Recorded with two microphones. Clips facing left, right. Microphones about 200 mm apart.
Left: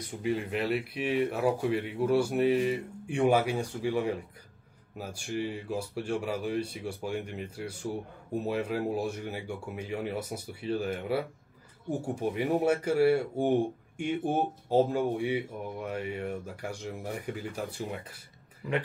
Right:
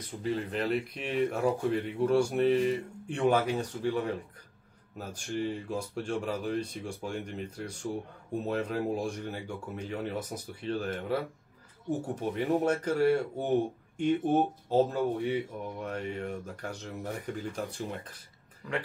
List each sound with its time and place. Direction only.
0.0 s speech: 10° left (ahead or behind)